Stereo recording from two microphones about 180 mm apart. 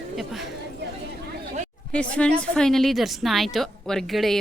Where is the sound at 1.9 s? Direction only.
5° left (ahead or behind).